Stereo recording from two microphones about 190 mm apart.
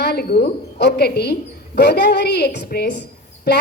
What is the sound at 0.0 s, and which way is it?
Speech, 55° left (ahead or behind).